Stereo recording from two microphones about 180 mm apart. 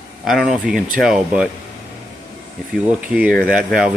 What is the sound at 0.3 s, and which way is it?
Speech, centre (ahead or behind).